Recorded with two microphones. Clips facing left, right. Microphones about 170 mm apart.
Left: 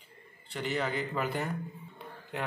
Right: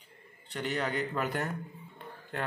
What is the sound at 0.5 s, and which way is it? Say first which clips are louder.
Speech: even; centre (ahead or behind).